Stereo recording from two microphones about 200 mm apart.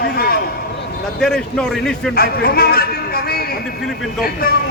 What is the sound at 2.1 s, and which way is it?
A man's voice, 50° left (ahead or behind).